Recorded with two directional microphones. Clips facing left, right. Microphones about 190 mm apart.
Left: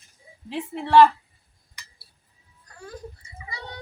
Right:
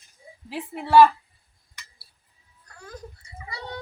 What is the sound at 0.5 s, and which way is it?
Speech, 10° right (ahead or behind).